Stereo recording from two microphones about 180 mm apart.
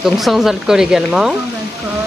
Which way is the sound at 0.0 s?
Centre (ahead or behind).